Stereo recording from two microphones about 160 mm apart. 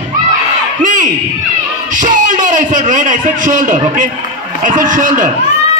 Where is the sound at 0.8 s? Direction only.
55° right (ahead or behind).